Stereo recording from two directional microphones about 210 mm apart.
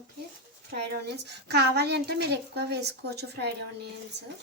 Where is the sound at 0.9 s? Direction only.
50° right (ahead or behind).